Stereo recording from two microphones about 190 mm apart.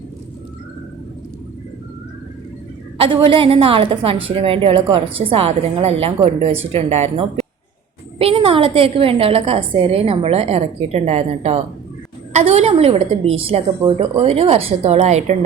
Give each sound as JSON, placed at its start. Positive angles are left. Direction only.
{"t": 3.0, "sound": "a woman's voice", "side_deg": -30}